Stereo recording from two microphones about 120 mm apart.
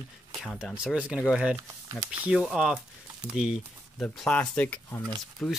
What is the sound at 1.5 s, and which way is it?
Speech, 20° right (ahead or behind).